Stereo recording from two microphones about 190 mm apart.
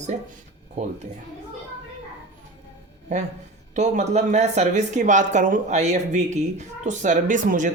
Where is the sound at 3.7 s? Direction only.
35° right (ahead or behind).